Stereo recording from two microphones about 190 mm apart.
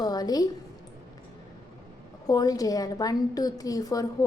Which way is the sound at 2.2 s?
20° left (ahead or behind).